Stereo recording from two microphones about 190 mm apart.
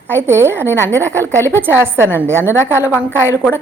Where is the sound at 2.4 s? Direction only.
10° left (ahead or behind).